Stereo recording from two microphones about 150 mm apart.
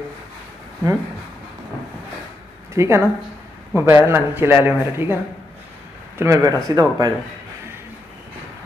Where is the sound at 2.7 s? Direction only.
20° right (ahead or behind).